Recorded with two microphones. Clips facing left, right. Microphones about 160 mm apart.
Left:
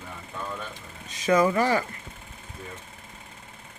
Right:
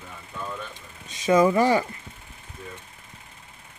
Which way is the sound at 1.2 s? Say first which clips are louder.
Right 3 dB; 20° right (ahead or behind).